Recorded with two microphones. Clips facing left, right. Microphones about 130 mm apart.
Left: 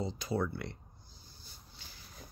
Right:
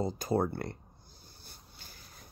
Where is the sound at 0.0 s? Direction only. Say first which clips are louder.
Right 4 dB; 45° right (ahead or behind).